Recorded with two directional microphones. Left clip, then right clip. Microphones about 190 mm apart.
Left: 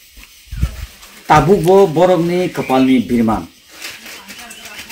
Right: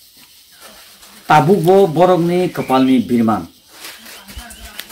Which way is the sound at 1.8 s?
Centre (ahead or behind).